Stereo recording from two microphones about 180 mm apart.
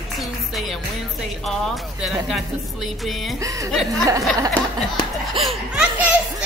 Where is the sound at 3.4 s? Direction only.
20° right (ahead or behind).